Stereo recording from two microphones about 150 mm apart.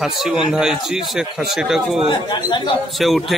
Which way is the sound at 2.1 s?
30° left (ahead or behind).